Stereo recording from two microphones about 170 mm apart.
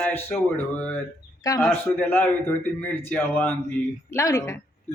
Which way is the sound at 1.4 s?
20° left (ahead or behind).